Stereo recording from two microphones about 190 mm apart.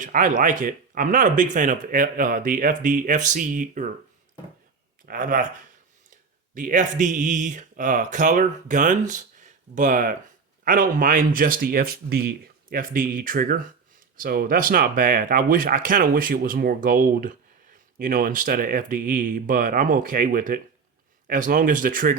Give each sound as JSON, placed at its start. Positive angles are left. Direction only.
{"t": 0.0, "sound": "speech", "side_deg": -45}
{"t": 5.0, "sound": "speech", "side_deg": -45}
{"t": 6.5, "sound": "speech", "side_deg": -45}